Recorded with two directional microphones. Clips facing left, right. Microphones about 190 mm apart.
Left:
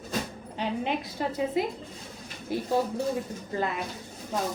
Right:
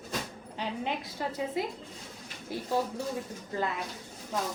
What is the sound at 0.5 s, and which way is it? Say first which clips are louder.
Speech: left 4 dB; 20° left (ahead or behind).